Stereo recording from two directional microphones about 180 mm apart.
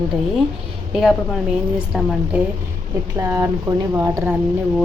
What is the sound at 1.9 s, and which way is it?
Speech, centre (ahead or behind).